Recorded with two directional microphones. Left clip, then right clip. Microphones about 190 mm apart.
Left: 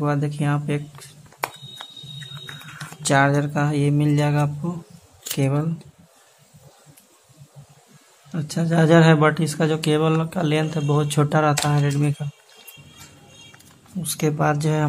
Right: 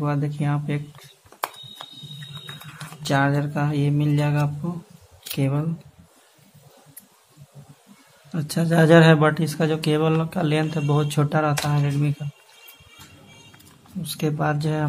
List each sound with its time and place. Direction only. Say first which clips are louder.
0.0 s speech: left 3 dB; 10° left (ahead or behind)
1.8 s a sound: left 2 dB; 5° left (ahead or behind)
3.0 s speech: left 4 dB; 15° left (ahead or behind)
8.3 s speech: right 1 dB; centre (ahead or behind); by 12.2 s 15° left (ahead or behind)
14.0 s speech: left 3 dB; 15° left (ahead or behind)